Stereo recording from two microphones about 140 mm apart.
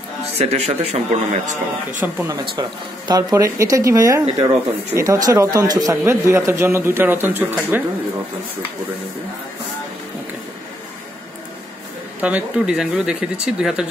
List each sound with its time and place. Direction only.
0.4 s speech: 45° right (ahead or behind)
3.1 s speech: 25° right (ahead or behind)
12.2 s speech: 10° right (ahead or behind)